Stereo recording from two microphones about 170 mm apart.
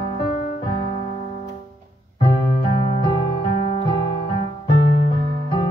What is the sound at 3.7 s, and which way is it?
Music, 30° left (ahead or behind).